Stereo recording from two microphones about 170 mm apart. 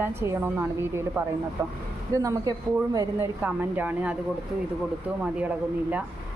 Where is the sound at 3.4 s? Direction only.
10° right (ahead or behind).